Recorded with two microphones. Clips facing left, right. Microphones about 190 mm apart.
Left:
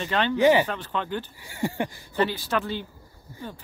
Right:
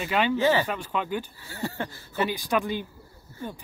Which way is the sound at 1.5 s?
15° left (ahead or behind).